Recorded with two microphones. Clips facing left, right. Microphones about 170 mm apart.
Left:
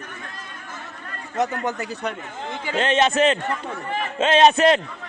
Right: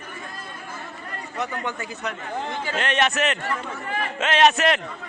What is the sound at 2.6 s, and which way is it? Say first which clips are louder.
A man's voice: left 5 dB; 25° left (ahead or behind).